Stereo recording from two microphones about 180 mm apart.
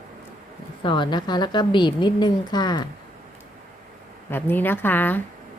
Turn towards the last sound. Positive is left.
turn(degrees=10)  # may be behind; listen again after turning